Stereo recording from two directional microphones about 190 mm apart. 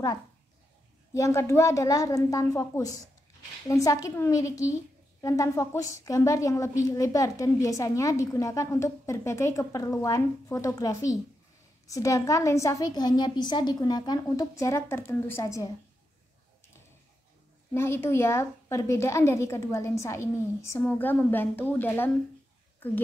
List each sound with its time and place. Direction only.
1.1 s a woman's voice: 15° left (ahead or behind)
17.7 s a woman's voice: 10° left (ahead or behind)